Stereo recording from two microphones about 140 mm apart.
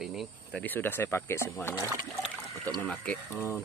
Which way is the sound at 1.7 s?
15° right (ahead or behind).